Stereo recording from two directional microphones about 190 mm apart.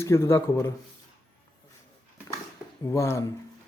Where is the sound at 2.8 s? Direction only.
15° left (ahead or behind).